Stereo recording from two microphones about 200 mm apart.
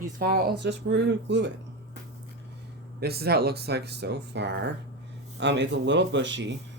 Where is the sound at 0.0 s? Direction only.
50° right (ahead or behind).